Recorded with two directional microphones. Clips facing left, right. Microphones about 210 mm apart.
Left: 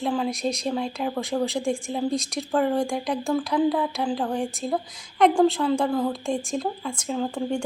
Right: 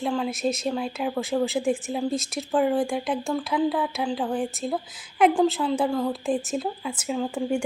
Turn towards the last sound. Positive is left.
turn(degrees=-5)  # may be behind; listen again after turning